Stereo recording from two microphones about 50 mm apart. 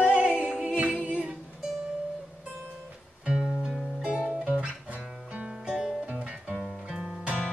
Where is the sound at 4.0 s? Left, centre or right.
Right.